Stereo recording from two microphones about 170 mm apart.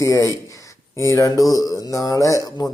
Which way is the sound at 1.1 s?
20° left (ahead or behind).